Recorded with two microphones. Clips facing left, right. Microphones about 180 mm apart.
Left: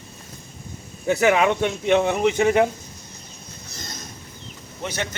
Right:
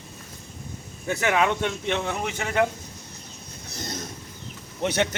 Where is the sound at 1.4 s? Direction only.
15° left (ahead or behind).